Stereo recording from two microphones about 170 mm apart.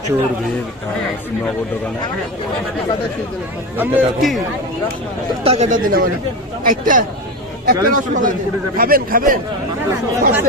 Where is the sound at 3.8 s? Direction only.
5° right (ahead or behind).